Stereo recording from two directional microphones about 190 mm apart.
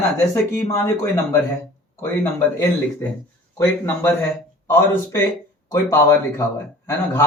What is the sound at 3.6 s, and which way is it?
Speech, 10° left (ahead or behind).